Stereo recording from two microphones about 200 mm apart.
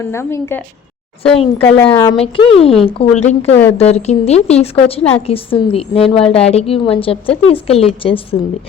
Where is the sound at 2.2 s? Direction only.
25° left (ahead or behind).